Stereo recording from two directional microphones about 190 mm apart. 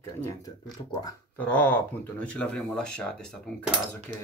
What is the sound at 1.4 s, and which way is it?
Speech, 10° left (ahead or behind).